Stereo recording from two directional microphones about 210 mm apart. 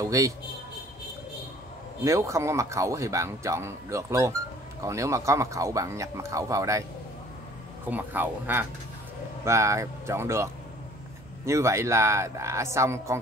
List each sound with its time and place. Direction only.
0.0 s speech: 15° right (ahead or behind)
2.0 s speech: 15° right (ahead or behind)
7.9 s speech: 10° right (ahead or behind)